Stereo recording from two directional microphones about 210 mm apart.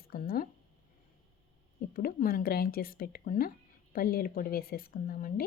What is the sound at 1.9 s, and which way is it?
Speech, 45° left (ahead or behind).